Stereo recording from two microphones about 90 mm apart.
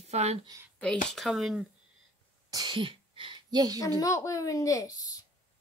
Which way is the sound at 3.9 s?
35° left (ahead or behind).